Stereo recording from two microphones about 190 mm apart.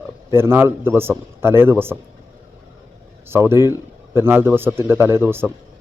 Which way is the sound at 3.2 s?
15° right (ahead or behind).